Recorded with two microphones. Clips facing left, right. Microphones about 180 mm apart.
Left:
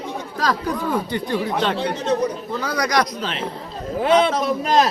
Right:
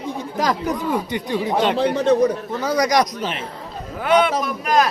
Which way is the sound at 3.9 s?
25° left (ahead or behind).